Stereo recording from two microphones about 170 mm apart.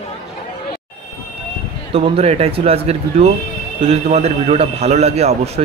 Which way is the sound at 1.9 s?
35° right (ahead or behind).